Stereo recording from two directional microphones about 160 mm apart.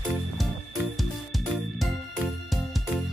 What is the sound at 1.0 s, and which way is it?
Music, centre (ahead or behind).